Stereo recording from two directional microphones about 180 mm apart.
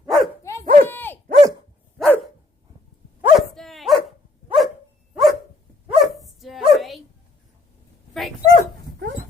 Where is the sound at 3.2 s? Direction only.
Centre (ahead or behind).